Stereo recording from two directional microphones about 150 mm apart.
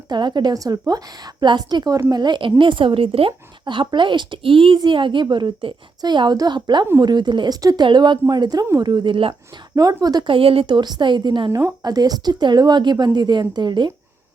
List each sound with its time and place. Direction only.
0.1 s a woman's voice: 30° right (ahead or behind)